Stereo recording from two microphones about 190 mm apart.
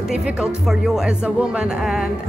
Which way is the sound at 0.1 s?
5° right (ahead or behind).